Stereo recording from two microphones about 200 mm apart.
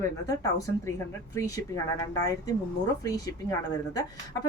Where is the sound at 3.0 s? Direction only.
20° left (ahead or behind).